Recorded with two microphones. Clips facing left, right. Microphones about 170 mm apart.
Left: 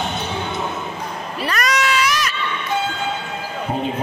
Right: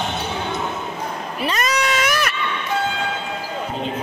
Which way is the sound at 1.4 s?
25° right (ahead or behind).